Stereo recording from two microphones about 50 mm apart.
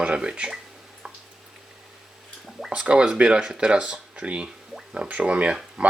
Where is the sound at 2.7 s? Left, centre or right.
Centre.